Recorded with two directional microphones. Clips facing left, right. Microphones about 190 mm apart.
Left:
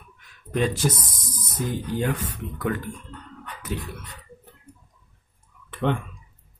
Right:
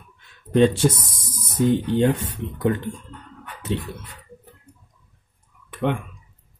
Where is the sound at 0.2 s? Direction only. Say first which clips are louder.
Right 8 dB; 30° right (ahead or behind).